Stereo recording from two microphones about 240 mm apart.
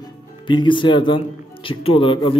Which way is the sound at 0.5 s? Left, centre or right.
Centre.